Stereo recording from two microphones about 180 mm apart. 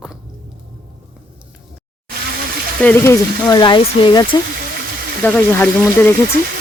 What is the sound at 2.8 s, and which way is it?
Speech, 10° left (ahead or behind).